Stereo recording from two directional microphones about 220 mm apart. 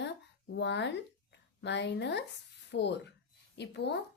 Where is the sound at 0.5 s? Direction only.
50° left (ahead or behind).